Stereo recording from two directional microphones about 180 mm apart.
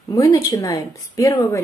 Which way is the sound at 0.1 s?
20° left (ahead or behind).